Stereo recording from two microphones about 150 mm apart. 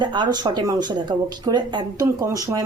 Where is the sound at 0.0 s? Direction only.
30° right (ahead or behind).